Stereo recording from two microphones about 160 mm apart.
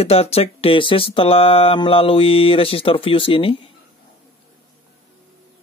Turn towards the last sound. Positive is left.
turn(degrees=35)  # may be behind; listen again after turning